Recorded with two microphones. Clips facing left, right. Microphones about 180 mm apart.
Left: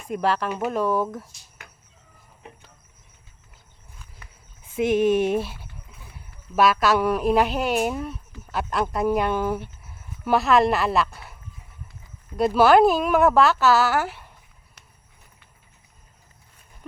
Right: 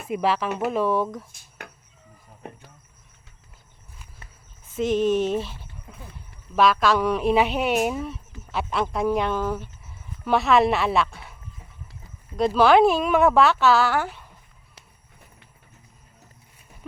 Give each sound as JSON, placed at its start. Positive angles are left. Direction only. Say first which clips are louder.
{"t": 0.1, "sound": "speech", "louder": "even", "side_deg": -5}
{"t": 1.3, "sound": "speech", "louder": "right 7 dB", "side_deg": -60}
{"t": 4.6, "sound": "a woman's voice", "louder": "left 2 dB", "side_deg": 10}
{"t": 12.5, "sound": "speech", "louder": "left 1 dB", "side_deg": 5}